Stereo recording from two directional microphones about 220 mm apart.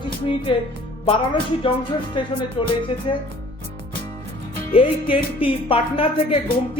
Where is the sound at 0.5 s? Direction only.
20° left (ahead or behind).